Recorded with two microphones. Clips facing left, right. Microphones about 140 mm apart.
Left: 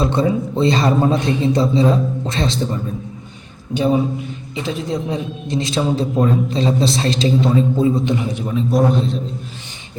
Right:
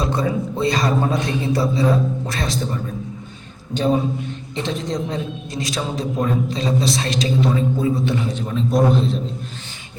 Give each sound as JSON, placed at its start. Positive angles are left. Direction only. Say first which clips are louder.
{"t": 0.0, "sound": "a man's voice", "louder": "left 4 dB", "side_deg": 25}
{"t": 3.8, "sound": "a man's voice", "louder": "left 2 dB", "side_deg": 10}
{"t": 5.5, "sound": "a man's voice", "louder": "left 9 dB", "side_deg": 25}